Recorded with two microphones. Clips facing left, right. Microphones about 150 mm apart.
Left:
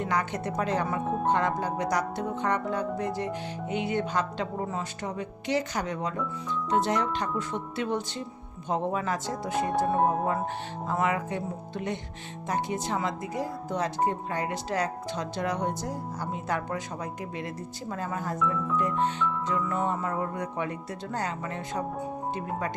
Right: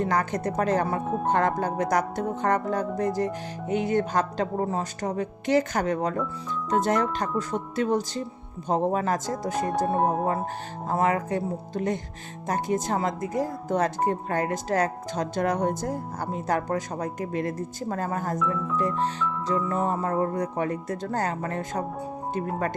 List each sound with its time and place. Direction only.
0.0 s speech: 40° right (ahead or behind)
1.0 s speech: centre (ahead or behind)
1.3 s speech: 50° right (ahead or behind)
9.6 s speech: centre (ahead or behind)
10.8 s speech: 40° right (ahead or behind)
18.3 s speech: centre (ahead or behind)
19.5 s speech: 35° right (ahead or behind)